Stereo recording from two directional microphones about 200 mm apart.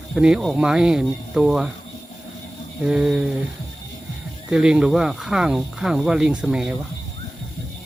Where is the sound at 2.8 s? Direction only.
5° right (ahead or behind).